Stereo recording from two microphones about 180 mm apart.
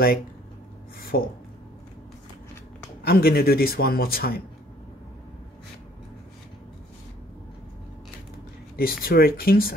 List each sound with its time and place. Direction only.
1.1 s a man's voice: 55° left (ahead or behind)
3.1 s a man's voice: 55° left (ahead or behind)
8.7 s a man's voice: 55° left (ahead or behind)